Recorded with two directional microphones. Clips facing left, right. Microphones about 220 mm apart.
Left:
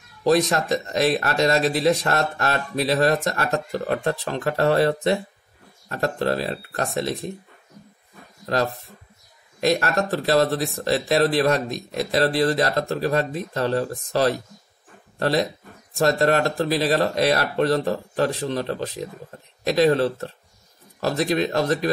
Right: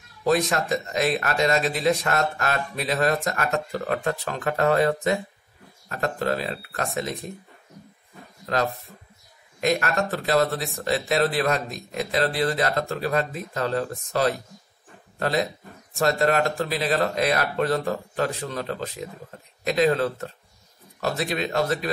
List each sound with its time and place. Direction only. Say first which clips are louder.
0.3 s speech: left 3 dB; 35° left (ahead or behind)
9.6 s speech: left 2 dB; 35° left (ahead or behind)